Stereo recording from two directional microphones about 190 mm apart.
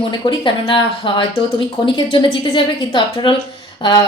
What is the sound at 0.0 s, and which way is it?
Speech, 25° left (ahead or behind).